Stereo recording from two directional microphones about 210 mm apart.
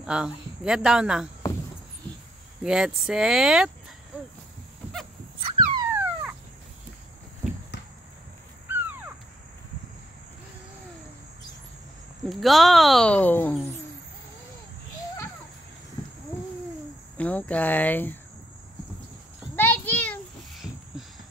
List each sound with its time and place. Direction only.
0.0 s speech: 5° right (ahead or behind)
2.6 s speech: 5° right (ahead or behind)
5.4 s dog: 20° right (ahead or behind)
8.6 s caw: 10° right (ahead or behind)
12.3 s speech: centre (ahead or behind)
17.2 s speech: 5° left (ahead or behind)
19.5 s a sound: 10° left (ahead or behind)